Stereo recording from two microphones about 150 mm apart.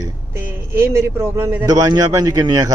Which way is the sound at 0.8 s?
15° right (ahead or behind).